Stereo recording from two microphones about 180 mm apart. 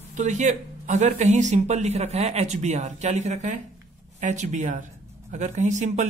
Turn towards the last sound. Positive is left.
turn(degrees=-40)  # may be behind; listen again after turning